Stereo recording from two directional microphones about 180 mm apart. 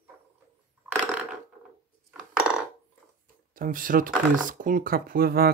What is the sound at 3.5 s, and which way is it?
Speech, 50° right (ahead or behind).